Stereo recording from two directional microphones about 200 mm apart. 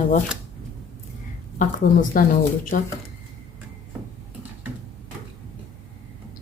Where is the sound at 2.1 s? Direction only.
45° left (ahead or behind).